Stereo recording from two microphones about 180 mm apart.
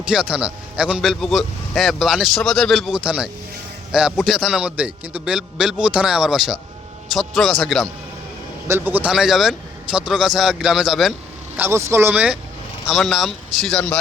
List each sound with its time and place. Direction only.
0.0 s a man's voice: 5° right (ahead or behind)
8.6 s a man's voice: 10° right (ahead or behind)
11.5 s a man's voice: 10° right (ahead or behind); by 14.0 s 5° left (ahead or behind)